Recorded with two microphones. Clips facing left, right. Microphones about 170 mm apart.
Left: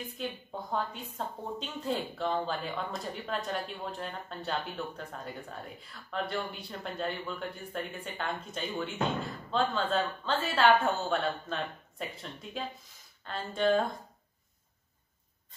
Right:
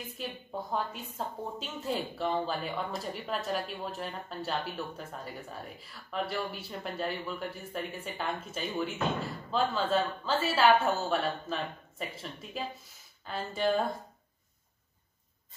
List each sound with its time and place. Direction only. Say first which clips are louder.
0.2 s a woman's voice: right 1 dB; 5° right (ahead or behind)